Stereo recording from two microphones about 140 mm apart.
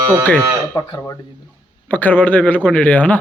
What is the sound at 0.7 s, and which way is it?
A man's voice, 20° left (ahead or behind).